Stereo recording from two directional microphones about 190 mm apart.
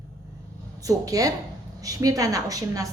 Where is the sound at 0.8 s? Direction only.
20° right (ahead or behind).